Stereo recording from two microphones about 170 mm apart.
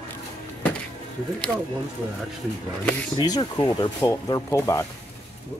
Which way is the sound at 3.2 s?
25° left (ahead or behind).